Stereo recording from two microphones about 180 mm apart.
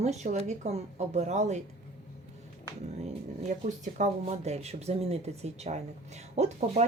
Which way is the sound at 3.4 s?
40° right (ahead or behind).